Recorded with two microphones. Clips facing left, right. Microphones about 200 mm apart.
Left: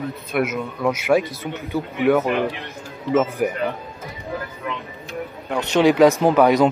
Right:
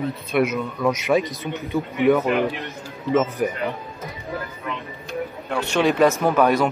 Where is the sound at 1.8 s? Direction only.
30° left (ahead or behind).